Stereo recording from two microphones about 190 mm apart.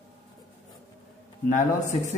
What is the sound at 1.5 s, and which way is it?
Speech, 40° left (ahead or behind).